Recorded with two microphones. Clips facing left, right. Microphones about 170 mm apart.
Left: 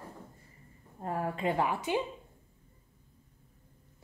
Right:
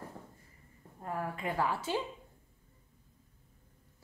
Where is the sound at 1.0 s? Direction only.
30° left (ahead or behind).